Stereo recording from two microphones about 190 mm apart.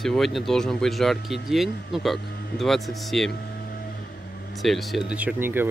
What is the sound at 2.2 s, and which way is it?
Speech, 55° left (ahead or behind).